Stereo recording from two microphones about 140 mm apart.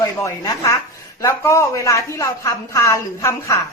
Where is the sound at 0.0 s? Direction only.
25° left (ahead or behind).